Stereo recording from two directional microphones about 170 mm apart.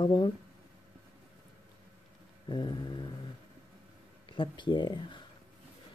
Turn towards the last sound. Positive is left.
turn(degrees=25)  # may be behind; listen again after turning